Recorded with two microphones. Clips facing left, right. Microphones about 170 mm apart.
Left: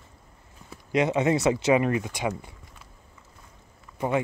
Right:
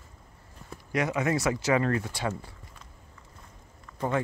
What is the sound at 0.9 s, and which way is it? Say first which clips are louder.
Speech: left 5 dB; 25° left (ahead or behind).